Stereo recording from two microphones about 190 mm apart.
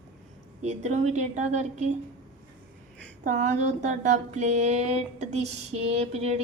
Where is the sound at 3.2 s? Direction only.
40° right (ahead or behind).